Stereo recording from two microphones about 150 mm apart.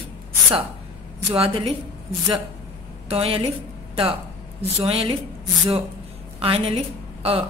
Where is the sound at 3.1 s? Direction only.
40° right (ahead or behind).